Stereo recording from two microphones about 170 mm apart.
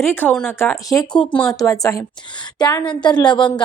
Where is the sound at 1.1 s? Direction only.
5° left (ahead or behind).